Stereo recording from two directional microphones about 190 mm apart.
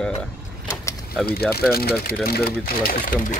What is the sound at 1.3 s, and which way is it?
Speech, 55° left (ahead or behind).